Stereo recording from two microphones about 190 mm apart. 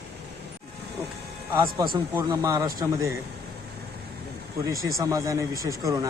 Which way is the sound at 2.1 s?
20° right (ahead or behind).